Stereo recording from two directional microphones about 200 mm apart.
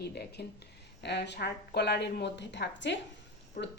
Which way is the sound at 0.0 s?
55° left (ahead or behind).